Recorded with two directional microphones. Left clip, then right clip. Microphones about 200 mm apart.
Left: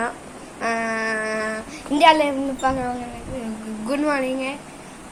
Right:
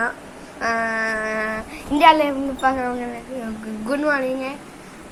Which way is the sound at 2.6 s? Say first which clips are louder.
Right 3 dB; centre (ahead or behind).